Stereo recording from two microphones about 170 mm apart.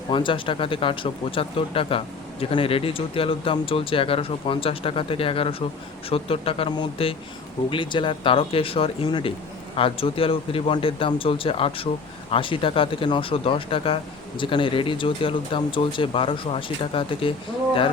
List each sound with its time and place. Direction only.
0.1 s speech: 30° left (ahead or behind)